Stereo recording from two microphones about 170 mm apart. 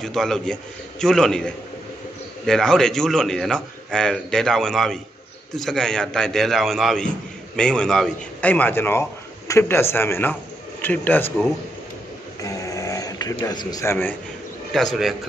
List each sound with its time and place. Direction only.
0.0 s a man's voice: centre (ahead or behind)
12.4 s a sound: 20° left (ahead or behind)
14.7 s a man's voice: centre (ahead or behind)